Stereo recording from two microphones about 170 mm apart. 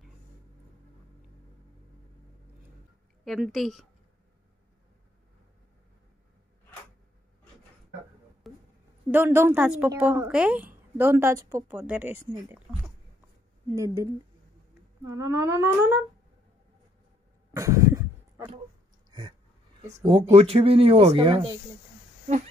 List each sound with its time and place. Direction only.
3.3 s speech: centre (ahead or behind)
8.5 s a sound: centre (ahead or behind)
9.1 s speech: 15° right (ahead or behind)
15.0 s speech: 20° right (ahead or behind)
17.6 s a sound: 20° right (ahead or behind)
20.1 s speech: 35° right (ahead or behind)